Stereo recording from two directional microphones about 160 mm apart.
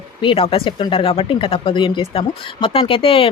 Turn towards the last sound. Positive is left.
turn(degrees=35)  # may be behind; listen again after turning